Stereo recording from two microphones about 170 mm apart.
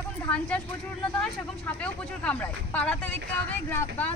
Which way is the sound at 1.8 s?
10° left (ahead or behind).